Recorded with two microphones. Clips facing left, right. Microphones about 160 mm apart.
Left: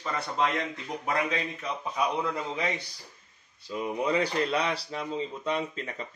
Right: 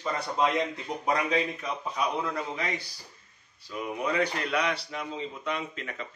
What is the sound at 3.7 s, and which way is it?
Speech, 30° left (ahead or behind).